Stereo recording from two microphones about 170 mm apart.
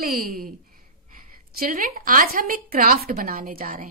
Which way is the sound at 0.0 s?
60° right (ahead or behind).